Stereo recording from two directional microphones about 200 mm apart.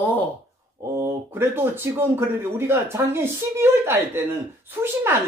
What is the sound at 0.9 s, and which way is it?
Speech, 10° right (ahead or behind).